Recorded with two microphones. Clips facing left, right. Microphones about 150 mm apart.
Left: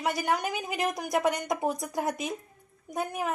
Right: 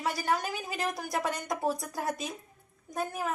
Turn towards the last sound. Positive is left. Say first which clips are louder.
# left 2 dB
turn(degrees=20)  # may be behind; listen again after turning